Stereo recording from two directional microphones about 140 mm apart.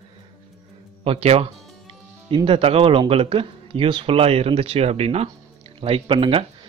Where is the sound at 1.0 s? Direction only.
45° right (ahead or behind).